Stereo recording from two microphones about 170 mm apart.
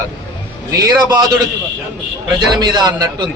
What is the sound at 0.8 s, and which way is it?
Speech, 25° right (ahead or behind).